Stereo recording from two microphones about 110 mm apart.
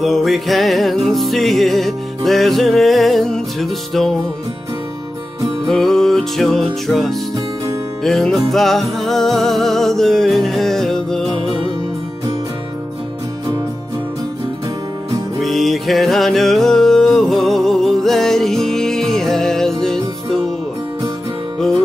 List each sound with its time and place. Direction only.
0.0 s music: centre (ahead or behind)
5.7 s music: 5° left (ahead or behind)
11.3 s music: 50° right (ahead or behind)
15.4 s music: centre (ahead or behind)